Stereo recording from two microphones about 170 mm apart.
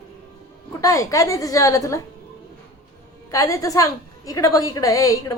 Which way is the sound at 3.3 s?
20° left (ahead or behind).